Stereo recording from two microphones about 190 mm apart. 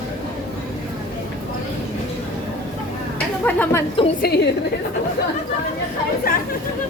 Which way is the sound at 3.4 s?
10° left (ahead or behind).